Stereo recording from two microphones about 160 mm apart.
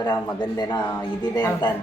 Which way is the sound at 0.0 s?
25° left (ahead or behind).